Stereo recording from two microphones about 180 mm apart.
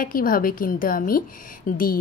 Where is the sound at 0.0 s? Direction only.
50° left (ahead or behind).